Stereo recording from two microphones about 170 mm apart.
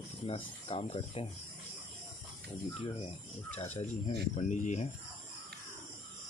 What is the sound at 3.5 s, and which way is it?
Speech, 40° left (ahead or behind).